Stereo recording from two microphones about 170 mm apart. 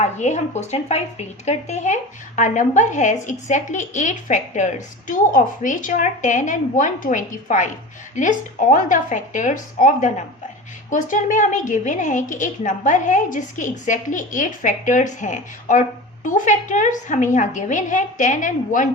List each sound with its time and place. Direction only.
0.0 s a woman's voice: 40° left (ahead or behind)